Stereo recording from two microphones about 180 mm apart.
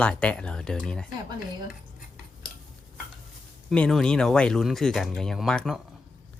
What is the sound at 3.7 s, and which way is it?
Speech, 5° left (ahead or behind).